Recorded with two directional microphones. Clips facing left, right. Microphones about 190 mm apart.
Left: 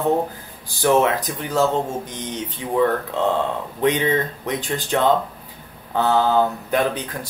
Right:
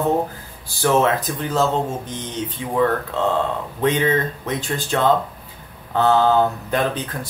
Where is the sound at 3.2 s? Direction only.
15° left (ahead or behind).